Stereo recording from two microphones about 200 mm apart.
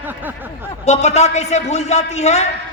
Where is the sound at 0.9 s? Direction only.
35° left (ahead or behind).